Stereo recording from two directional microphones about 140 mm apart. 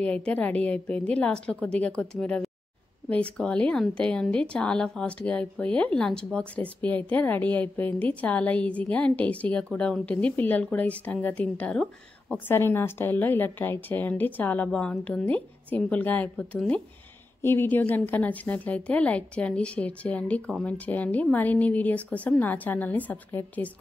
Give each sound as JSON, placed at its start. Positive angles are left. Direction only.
{"t": 0.0, "sound": "a woman's voice", "side_deg": 10}